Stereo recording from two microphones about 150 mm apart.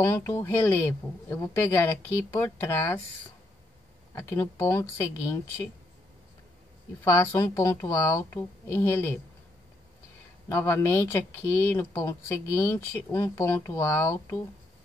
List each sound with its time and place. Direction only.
0.0 s speech: 15° left (ahead or behind)
4.1 s speech: 15° left (ahead or behind)
7.1 s speech: 20° left (ahead or behind)
10.5 s speech: 15° left (ahead or behind)